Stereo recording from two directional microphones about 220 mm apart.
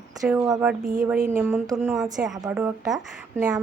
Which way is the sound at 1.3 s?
10° right (ahead or behind).